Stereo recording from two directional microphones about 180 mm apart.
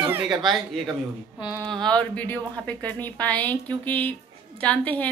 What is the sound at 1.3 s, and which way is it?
Speech, 25° left (ahead or behind).